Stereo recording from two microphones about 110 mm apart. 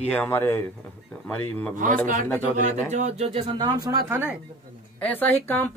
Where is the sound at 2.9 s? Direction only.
85° right.